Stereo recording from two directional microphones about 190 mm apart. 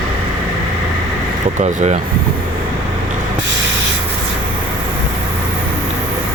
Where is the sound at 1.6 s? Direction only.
40° right (ahead or behind).